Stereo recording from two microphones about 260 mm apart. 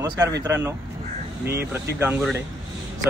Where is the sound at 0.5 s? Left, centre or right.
Centre.